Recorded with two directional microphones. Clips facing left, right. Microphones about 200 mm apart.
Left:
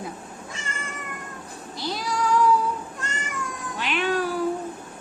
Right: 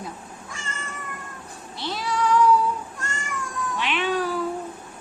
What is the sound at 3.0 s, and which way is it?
Cat, 20° left (ahead or behind).